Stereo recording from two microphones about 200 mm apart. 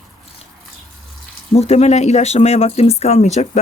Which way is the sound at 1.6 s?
30° left (ahead or behind).